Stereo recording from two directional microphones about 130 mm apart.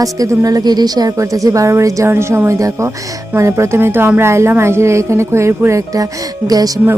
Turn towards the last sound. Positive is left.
turn(degrees=-30)  # may be behind; listen again after turning